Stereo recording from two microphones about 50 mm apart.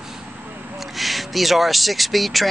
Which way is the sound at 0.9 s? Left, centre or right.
Centre.